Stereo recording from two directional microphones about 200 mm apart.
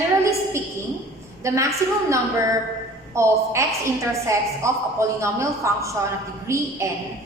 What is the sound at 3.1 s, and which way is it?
A woman's voice, 15° right (ahead or behind).